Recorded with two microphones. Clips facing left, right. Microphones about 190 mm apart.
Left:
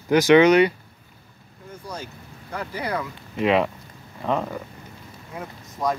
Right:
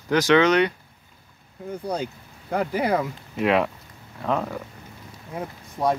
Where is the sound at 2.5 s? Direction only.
55° right (ahead or behind).